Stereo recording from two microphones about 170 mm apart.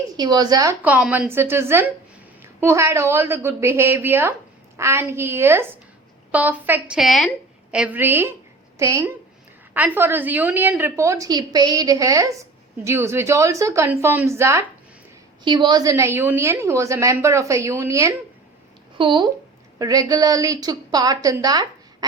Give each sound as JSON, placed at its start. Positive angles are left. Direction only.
{"t": 0.2, "sound": "a woman's voice", "side_deg": -25}
{"t": 15.4, "sound": "a woman's voice", "side_deg": -25}
{"t": 18.9, "sound": "a woman's voice", "side_deg": -30}